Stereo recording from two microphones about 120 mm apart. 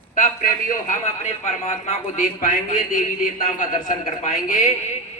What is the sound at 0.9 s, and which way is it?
A man's voice, 75° left (ahead or behind).